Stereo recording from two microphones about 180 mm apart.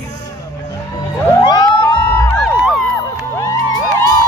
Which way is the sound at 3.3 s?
20° left (ahead or behind).